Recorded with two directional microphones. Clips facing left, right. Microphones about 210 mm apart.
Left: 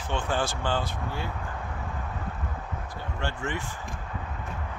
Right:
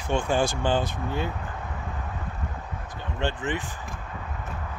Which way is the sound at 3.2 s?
20° right (ahead or behind).